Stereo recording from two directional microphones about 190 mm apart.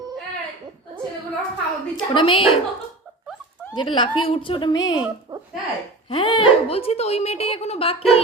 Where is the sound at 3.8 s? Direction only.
25° left (ahead or behind).